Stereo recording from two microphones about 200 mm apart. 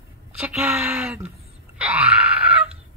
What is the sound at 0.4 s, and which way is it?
Speech, 5° right (ahead or behind).